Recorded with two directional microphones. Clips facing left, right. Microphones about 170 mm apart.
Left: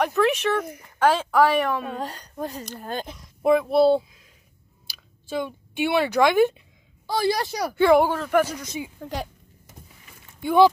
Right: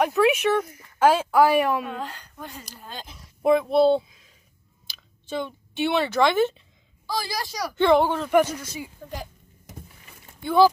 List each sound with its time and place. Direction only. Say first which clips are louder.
0.0 s a woman's voice: right 1 dB; 5° right (ahead or behind)
1.8 s speech: left 1 dB; 40° left (ahead or behind)
2.9 s speech: left 9 dB; 55° left (ahead or behind)
3.4 s speech: left 1 dB; 5° left (ahead or behind)
7.1 s a woman's voice: left 6 dB; 60° left (ahead or behind)
7.7 s speech: left 1 dB; 10° left (ahead or behind)
8.6 s speech: left 3 dB; 20° left (ahead or behind)
10.4 s speech: left 1 dB; 20° left (ahead or behind)